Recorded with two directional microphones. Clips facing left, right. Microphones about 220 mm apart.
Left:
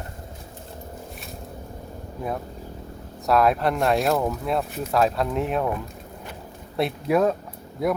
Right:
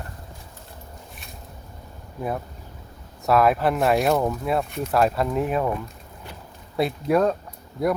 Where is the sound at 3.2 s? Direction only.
Centre (ahead or behind).